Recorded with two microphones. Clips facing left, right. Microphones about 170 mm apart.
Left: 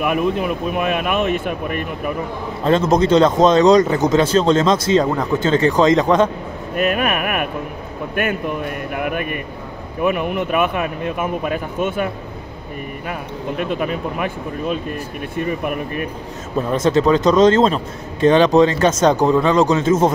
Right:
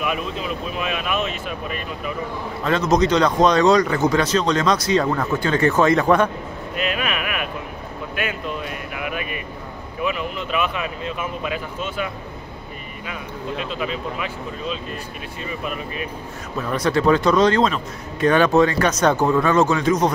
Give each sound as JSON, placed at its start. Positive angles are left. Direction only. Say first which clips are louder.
{"t": 0.0, "sound": "speech", "louder": "left 7 dB", "side_deg": 55}
{"t": 2.6, "sound": "a man's voice", "louder": "left 3 dB", "side_deg": 30}
{"t": 6.7, "sound": "a sound", "louder": "left 6 dB", "side_deg": 50}
{"t": 8.2, "sound": "speech", "louder": "left 6 dB", "side_deg": 50}
{"t": 16.5, "sound": "a man's voice", "louder": "left 5 dB", "side_deg": 25}